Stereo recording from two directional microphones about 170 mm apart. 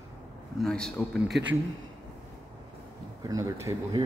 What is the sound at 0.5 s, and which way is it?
Speech, 5° left (ahead or behind).